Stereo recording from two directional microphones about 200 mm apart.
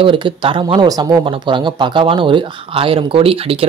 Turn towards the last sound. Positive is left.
turn(degrees=-30)  # may be behind; listen again after turning